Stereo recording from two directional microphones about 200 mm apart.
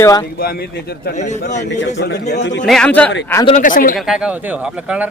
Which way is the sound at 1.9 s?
60° left (ahead or behind).